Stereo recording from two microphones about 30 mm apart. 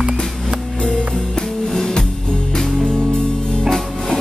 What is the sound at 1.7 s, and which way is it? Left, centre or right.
Music, left.